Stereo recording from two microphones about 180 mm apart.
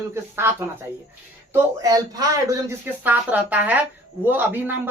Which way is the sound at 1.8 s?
20° right (ahead or behind).